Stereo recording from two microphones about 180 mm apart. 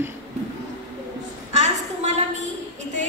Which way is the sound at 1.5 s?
40° right (ahead or behind).